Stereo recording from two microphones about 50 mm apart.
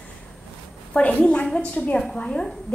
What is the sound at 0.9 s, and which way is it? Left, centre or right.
A woman's voice, left.